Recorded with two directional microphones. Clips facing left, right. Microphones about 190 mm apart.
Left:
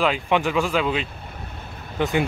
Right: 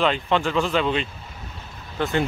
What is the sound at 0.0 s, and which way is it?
Speech, 10° left (ahead or behind).